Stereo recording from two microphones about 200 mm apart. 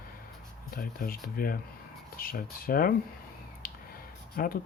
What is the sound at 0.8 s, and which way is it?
Speech, 45° left (ahead or behind).